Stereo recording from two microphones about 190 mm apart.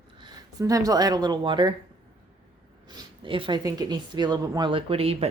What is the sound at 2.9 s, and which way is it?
Speech, 25° right (ahead or behind).